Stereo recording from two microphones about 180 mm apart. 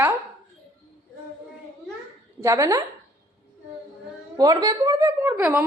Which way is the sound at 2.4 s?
20° right (ahead or behind).